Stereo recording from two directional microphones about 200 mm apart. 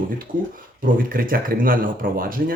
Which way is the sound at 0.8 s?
45° right (ahead or behind).